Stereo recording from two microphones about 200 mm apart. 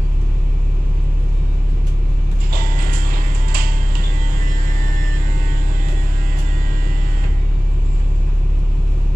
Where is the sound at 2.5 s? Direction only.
45° right (ahead or behind).